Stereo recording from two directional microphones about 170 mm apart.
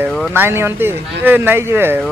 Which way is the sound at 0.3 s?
15° right (ahead or behind).